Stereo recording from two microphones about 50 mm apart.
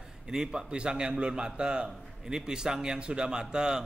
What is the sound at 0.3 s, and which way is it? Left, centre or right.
A man's voice, centre.